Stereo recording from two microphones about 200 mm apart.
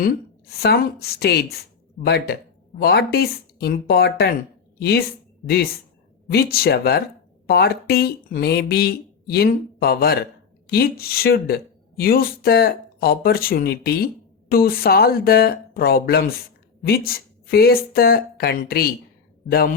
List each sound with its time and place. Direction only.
0.6 s speech: 50° left (ahead or behind)
6.2 s speech: 50° left (ahead or behind)